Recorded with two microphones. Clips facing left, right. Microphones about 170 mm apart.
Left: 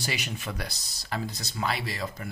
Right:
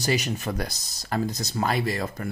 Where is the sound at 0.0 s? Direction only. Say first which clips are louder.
Right 8 dB; 40° right (ahead or behind).